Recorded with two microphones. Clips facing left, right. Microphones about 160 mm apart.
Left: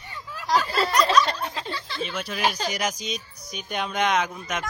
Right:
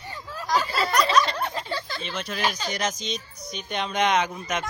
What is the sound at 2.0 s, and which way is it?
Speech, 5° left (ahead or behind).